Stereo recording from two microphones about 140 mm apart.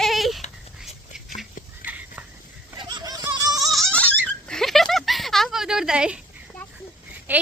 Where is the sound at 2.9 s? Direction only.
25° right (ahead or behind).